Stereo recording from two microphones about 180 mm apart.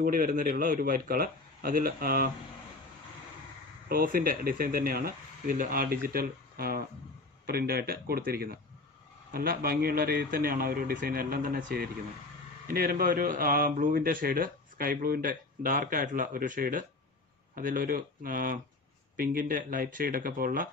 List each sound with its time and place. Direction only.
0.0 s a man's voice: 50° right (ahead or behind)
3.9 s a man's voice: 50° right (ahead or behind)